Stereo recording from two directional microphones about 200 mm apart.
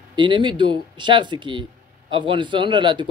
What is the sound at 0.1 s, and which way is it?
Speech, 25° right (ahead or behind).